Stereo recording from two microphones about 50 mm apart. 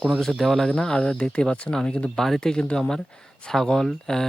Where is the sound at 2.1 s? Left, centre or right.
Centre.